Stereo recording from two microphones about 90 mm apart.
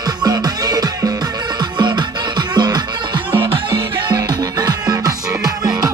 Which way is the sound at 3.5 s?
65° right (ahead or behind).